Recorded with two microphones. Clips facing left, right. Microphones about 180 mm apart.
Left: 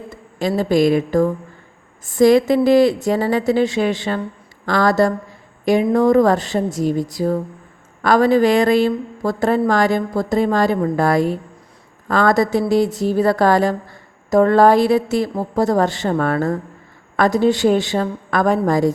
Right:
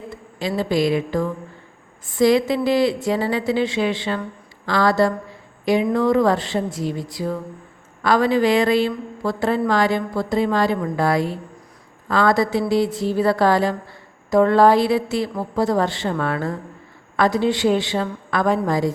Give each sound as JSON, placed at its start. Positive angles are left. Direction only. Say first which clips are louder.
{"t": 0.3, "sound": "a woman's voice", "louder": "left 5 dB", "side_deg": 45}